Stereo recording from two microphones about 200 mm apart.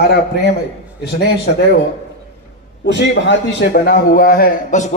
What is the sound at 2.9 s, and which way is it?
A man's voice, 60° left (ahead or behind).